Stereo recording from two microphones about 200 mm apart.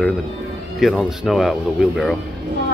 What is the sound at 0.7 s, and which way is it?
Speech, centre (ahead or behind).